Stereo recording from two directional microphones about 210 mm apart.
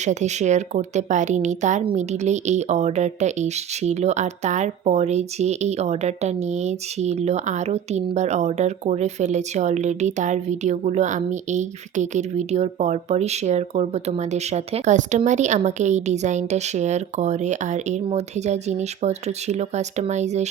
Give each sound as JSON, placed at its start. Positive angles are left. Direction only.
{"t": 0.0, "sound": "a woman's voice", "side_deg": -35}